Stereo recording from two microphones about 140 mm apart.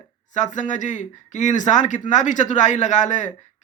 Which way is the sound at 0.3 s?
60° left (ahead or behind).